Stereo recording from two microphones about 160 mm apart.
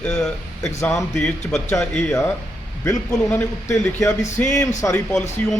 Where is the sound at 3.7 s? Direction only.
20° left (ahead or behind).